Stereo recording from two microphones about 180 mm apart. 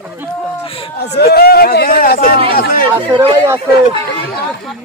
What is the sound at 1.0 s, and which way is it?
Speech, 65° left (ahead or behind).